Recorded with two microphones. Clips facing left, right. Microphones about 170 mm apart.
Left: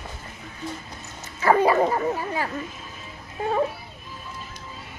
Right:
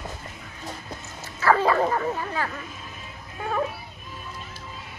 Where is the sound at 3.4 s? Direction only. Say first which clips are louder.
Left 4 dB; 30° left (ahead or behind).